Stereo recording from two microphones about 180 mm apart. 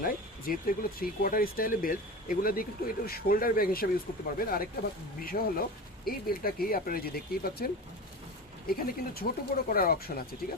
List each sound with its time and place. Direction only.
0.0 s speech: 50° left (ahead or behind)